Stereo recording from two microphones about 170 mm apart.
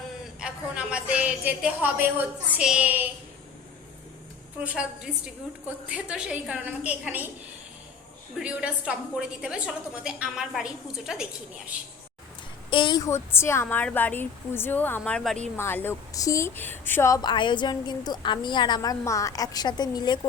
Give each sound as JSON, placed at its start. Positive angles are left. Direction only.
{"t": 0.3, "sound": "a woman's voice", "side_deg": -5}
{"t": 4.6, "sound": "a woman's voice", "side_deg": -5}
{"t": 8.4, "sound": "a woman's voice", "side_deg": -5}
{"t": 12.7, "sound": "a woman's voice", "side_deg": 25}